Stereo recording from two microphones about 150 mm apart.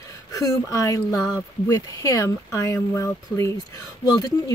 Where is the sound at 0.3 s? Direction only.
25° left (ahead or behind).